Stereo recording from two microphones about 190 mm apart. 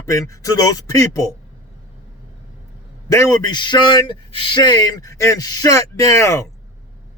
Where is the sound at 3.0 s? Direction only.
15° left (ahead or behind).